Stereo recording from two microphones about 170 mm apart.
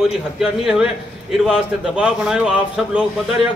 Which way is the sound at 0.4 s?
5° right (ahead or behind).